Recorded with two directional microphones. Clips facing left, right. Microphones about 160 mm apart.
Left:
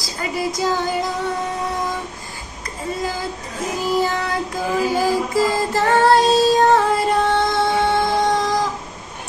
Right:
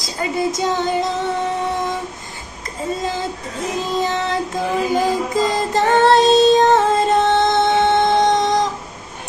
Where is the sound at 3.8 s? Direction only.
20° right (ahead or behind).